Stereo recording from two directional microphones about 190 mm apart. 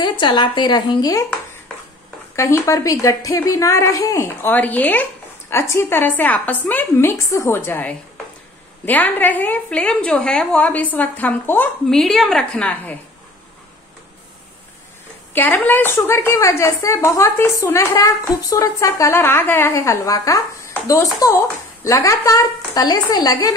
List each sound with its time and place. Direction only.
0.0 s speech: 25° left (ahead or behind)
2.3 s speech: 15° left (ahead or behind)
15.3 s speech: 10° left (ahead or behind)